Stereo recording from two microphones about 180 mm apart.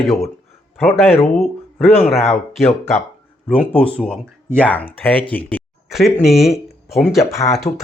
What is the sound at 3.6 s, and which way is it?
Speech, 5° left (ahead or behind).